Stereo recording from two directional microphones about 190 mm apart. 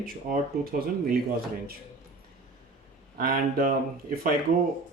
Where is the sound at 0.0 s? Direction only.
50° right (ahead or behind).